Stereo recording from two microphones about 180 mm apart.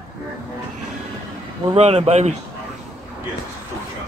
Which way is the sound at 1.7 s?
35° right (ahead or behind).